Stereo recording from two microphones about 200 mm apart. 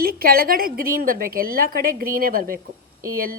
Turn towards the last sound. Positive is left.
turn(degrees=-45)  # may be behind; listen again after turning